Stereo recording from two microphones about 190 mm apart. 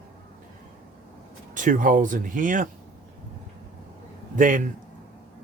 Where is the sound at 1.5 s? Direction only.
45° right (ahead or behind).